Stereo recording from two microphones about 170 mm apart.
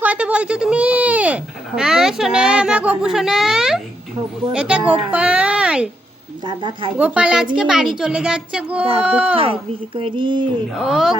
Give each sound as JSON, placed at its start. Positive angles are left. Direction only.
{"t": 0.0, "sound": "a sound", "side_deg": -5}
{"t": 4.5, "sound": "a child's voice", "side_deg": -5}
{"t": 6.4, "sound": "speech", "side_deg": -30}
{"t": 7.0, "sound": "a child's voice", "side_deg": -5}
{"t": 9.3, "sound": "a child's voice", "side_deg": -35}
{"t": 10.8, "sound": "a child's voice", "side_deg": 0}